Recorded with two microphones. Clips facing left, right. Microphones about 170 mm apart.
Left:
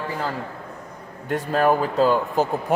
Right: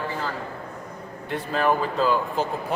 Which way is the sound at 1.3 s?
45° left (ahead or behind).